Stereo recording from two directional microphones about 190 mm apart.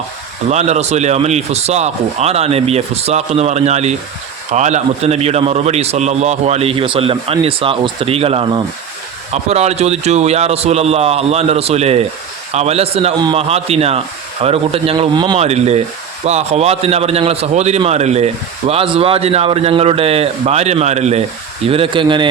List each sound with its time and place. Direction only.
0.5 s speech: 35° right (ahead or behind)